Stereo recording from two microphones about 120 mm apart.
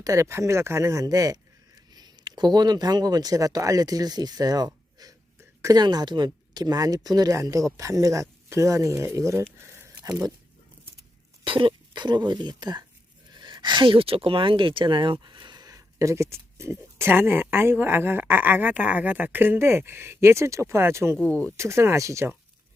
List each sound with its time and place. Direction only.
0.0 s speech: 25° right (ahead or behind)
9.1 s a sound: 25° right (ahead or behind)
11.4 s speech: 45° right (ahead or behind); by 21.2 s 20° right (ahead or behind)
21.2 s speech: 10° left (ahead or behind)
21.5 s speech: 20° right (ahead or behind)